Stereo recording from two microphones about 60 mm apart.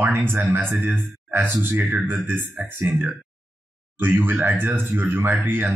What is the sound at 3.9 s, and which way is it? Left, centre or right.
Speech, right.